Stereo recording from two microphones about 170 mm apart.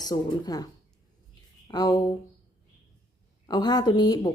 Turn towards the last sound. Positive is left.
turn(degrees=25)  # may be behind; listen again after turning